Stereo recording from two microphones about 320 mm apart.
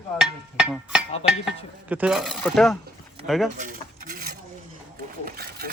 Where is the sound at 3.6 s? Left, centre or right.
Right.